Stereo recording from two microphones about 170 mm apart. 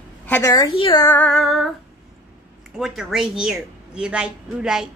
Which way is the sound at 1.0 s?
10° left (ahead or behind).